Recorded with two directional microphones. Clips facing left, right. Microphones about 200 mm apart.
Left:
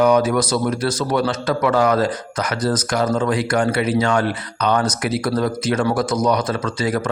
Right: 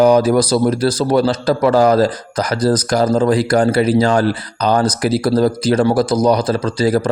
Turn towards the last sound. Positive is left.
turn(degrees=-35)  # may be behind; listen again after turning